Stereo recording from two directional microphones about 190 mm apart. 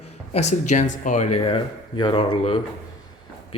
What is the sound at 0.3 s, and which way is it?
Speech, 35° left (ahead or behind).